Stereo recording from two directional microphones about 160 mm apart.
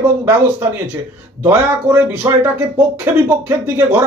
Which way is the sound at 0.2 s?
15° right (ahead or behind).